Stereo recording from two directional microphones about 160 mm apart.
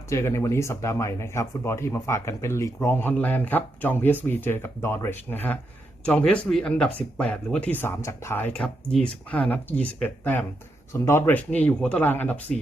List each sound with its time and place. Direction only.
0.1 s speech: 15° left (ahead or behind)